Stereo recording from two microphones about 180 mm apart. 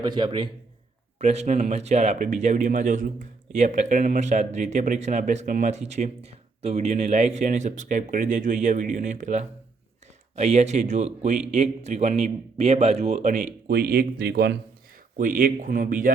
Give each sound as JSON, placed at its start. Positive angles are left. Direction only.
{"t": 0.0, "sound": "a man's voice", "side_deg": -25}
{"t": 1.2, "sound": "a man's voice", "side_deg": -40}
{"t": 13.7, "sound": "a man's voice", "side_deg": -60}
{"t": 15.2, "sound": "a man's voice", "side_deg": -50}